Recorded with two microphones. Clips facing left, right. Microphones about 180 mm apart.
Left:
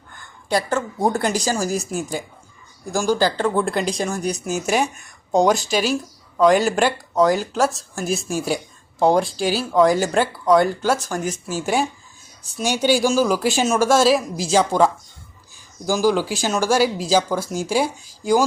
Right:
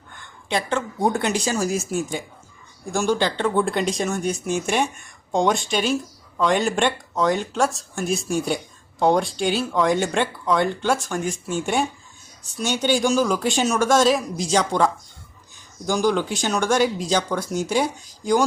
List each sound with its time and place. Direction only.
0.7 s speech: centre (ahead or behind)